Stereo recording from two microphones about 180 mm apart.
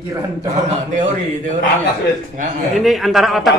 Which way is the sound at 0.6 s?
40° right (ahead or behind).